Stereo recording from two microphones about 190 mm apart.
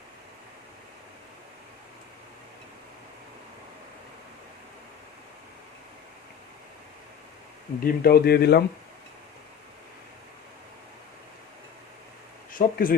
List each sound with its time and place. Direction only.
7.8 s speech: 55° left (ahead or behind)
12.5 s speech: 45° left (ahead or behind)